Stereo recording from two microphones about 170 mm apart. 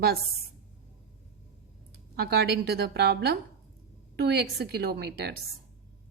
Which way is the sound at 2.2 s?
70° right (ahead or behind).